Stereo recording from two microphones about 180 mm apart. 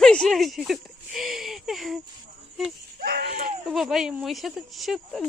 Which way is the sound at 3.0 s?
60° right (ahead or behind).